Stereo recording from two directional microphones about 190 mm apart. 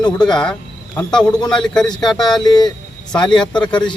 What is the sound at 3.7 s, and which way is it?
Speech, 25° left (ahead or behind).